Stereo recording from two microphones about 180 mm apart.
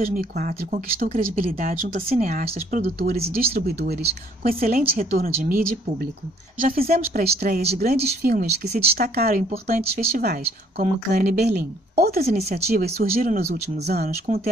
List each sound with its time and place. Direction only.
0.0 s speech: 50° right (ahead or behind)
6.6 s speech: 55° right (ahead or behind)